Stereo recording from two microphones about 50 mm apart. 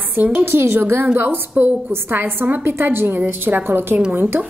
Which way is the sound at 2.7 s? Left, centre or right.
Right.